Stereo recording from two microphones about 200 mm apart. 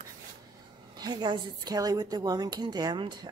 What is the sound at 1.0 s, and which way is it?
A woman's voice, 20° right (ahead or behind).